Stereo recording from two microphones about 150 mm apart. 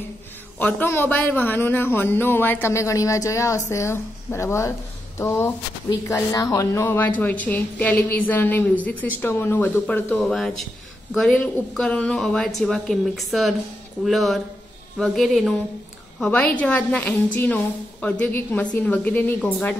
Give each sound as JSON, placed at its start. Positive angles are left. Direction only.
{"t": 0.6, "sound": "a woman's voice", "side_deg": 10}